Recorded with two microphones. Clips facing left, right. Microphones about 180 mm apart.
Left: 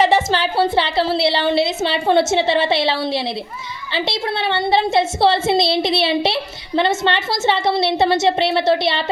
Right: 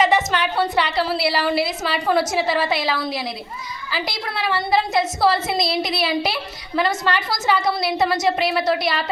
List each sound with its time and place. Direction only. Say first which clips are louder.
0.0 s a woman's voice: left 3 dB; 30° left (ahead or behind)